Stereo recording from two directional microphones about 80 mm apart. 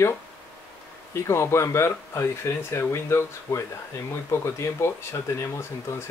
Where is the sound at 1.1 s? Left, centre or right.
Left.